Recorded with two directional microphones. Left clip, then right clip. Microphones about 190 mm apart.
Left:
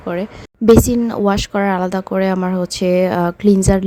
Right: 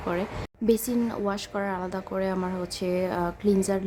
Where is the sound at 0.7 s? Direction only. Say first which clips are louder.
Left 14 dB; 40° left (ahead or behind).